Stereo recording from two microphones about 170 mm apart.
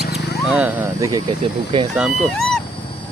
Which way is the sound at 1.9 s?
Centre (ahead or behind).